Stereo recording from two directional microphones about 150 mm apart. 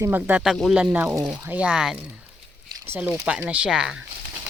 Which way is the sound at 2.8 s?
15° right (ahead or behind).